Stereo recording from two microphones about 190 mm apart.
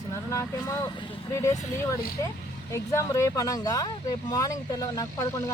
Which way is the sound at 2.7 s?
15° left (ahead or behind).